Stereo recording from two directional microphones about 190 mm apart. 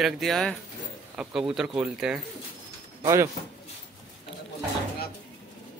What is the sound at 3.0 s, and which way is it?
Speech, 15° right (ahead or behind).